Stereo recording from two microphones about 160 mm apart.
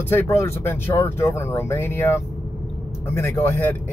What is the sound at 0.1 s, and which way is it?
Speech, 15° left (ahead or behind).